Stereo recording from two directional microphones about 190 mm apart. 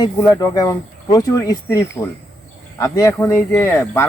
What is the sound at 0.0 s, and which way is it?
Speech, 20° left (ahead or behind).